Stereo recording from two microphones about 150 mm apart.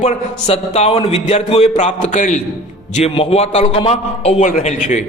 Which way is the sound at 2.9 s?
45° left (ahead or behind).